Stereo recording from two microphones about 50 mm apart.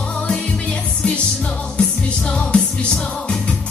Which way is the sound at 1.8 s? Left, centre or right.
Left.